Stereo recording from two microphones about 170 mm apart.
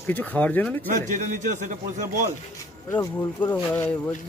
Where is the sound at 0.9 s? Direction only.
50° right (ahead or behind).